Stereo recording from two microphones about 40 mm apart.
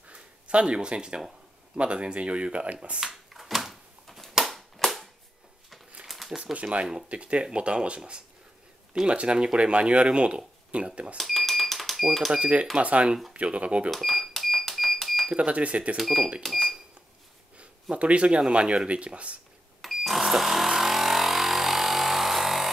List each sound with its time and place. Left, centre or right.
0.1 s speech: right
3.0 s a sound: centre
4.5 s cap gun: centre
6.0 s a sound: centre
6.4 s speech: right
11.1 s cash register: centre
12.3 s speech: right
12.7 s speech: right
13.8 s cash register: centre
15.3 s speech: right
16.0 s speech: centre
17.9 s speech: right
19.8 s a sound: centre